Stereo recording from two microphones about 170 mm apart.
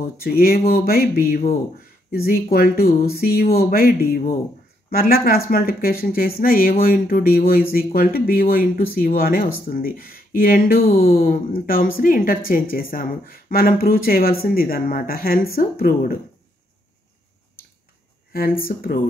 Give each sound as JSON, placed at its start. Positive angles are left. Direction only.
{"t": 0.2, "sound": "speech", "side_deg": 60}
{"t": 18.3, "sound": "speech", "side_deg": 55}